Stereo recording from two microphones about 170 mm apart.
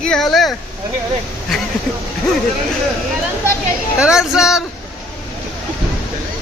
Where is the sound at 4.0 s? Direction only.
5° right (ahead or behind).